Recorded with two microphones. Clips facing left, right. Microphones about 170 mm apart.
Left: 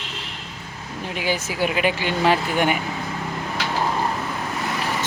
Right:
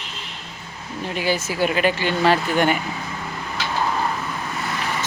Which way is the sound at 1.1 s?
15° left (ahead or behind).